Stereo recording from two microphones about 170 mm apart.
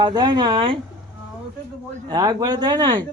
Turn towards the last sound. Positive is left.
turn(degrees=-25)  # may be behind; listen again after turning